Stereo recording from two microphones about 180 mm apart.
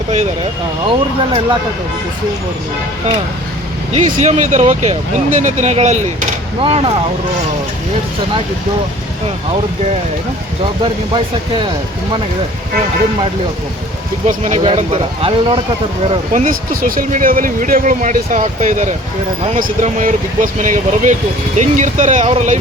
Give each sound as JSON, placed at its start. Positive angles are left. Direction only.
{"t": 0.9, "sound": "speech", "side_deg": -25}
{"t": 3.9, "sound": "speech", "side_deg": -40}
{"t": 10.6, "sound": "speech", "side_deg": -30}
{"t": 14.3, "sound": "speech", "side_deg": -40}
{"t": 16.3, "sound": "speech", "side_deg": -45}